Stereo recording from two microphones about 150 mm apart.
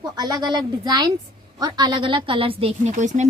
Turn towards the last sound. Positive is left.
turn(degrees=-55)  # may be behind; listen again after turning